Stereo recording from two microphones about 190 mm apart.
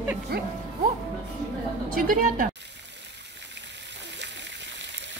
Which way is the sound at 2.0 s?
45° right (ahead or behind).